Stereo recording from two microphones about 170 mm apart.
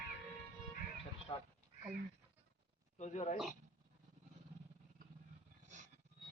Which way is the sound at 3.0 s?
45° left (ahead or behind).